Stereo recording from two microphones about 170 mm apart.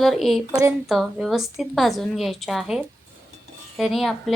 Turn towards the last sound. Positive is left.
turn(degrees=0)  # may be behind; listen again after turning